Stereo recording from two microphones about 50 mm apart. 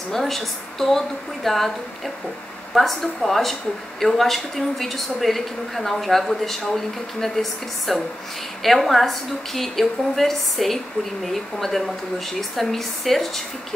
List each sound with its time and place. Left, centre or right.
0.1 s a woman's voice: centre